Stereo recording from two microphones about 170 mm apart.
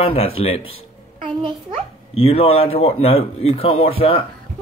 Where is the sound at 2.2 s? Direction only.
35° left (ahead or behind).